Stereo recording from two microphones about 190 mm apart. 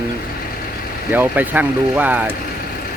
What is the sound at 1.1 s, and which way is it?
Speech, 10° right (ahead or behind).